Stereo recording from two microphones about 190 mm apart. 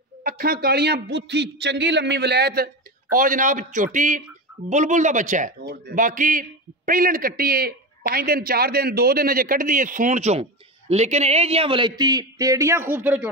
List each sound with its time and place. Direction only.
0.2 s a man's voice: 50° right (ahead or behind)
5.6 s a man's voice: 55° right (ahead or behind); by 13.3 s 10° right (ahead or behind)